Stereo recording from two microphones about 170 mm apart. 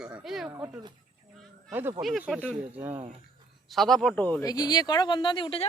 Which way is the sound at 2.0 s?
Centre (ahead or behind).